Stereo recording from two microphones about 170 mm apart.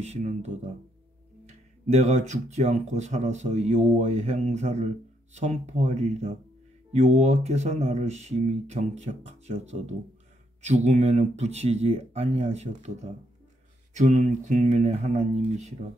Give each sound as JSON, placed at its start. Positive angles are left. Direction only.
{"t": 0.0, "sound": "speech", "side_deg": -40}